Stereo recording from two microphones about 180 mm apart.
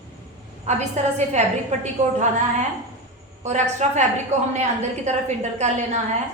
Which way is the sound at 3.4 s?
40° right (ahead or behind).